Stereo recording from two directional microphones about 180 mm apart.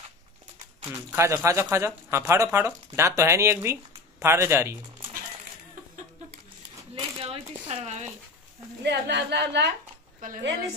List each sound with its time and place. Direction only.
1.1 s speech: 15° right (ahead or behind)
7.0 s speech: 30° right (ahead or behind)
8.8 s a woman's voice: 70° right (ahead or behind)